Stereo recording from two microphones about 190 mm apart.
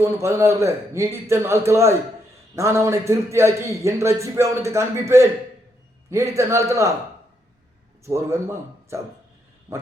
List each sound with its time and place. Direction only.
0.0 s a man's voice: 15° right (ahead or behind)
8.0 s a man's voice: 15° right (ahead or behind)